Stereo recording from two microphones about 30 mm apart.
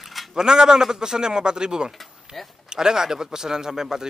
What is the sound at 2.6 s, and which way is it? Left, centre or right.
A man's voice, right.